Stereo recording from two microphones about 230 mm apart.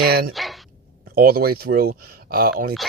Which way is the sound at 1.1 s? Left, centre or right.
Right.